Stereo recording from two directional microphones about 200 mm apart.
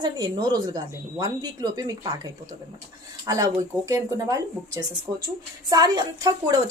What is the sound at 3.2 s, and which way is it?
Speech, 15° right (ahead or behind).